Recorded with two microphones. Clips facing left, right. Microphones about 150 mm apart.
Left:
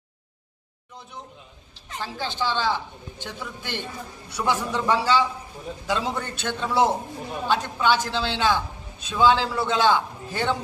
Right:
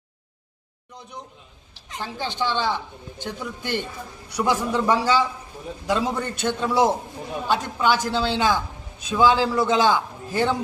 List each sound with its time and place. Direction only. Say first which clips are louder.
2.0 s a man's voice: right 1 dB; 15° right (ahead or behind)